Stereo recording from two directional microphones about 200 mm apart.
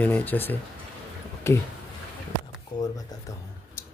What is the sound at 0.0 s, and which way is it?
Speech, 10° left (ahead or behind).